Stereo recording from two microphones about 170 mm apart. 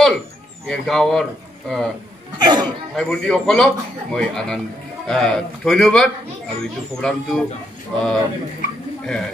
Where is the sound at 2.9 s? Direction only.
5° left (ahead or behind).